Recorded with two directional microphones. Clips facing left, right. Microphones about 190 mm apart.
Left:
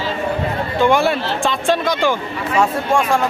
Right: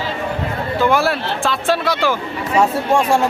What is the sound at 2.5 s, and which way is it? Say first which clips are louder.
Speech: right 1 dB; 25° right (ahead or behind).